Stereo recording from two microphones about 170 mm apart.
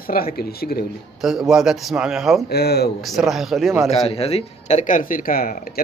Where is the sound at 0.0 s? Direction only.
60° left (ahead or behind).